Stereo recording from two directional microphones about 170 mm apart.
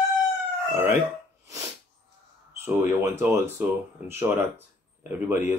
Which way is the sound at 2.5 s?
15° right (ahead or behind).